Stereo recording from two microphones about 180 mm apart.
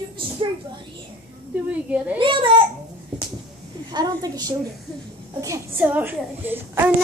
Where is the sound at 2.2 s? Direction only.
25° right (ahead or behind).